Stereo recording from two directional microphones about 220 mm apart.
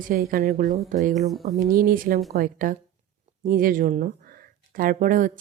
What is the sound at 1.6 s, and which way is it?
Speech, 40° right (ahead or behind).